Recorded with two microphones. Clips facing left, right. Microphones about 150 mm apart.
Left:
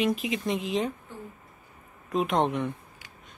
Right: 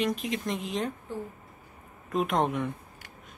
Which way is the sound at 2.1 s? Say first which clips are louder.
Left 1 dB; centre (ahead or behind).